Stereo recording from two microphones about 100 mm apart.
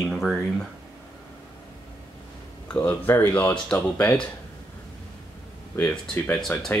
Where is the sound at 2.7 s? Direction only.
15° left (ahead or behind).